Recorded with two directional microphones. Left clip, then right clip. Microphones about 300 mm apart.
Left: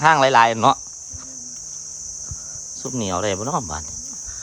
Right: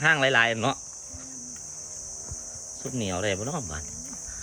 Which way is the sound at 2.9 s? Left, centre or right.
Centre.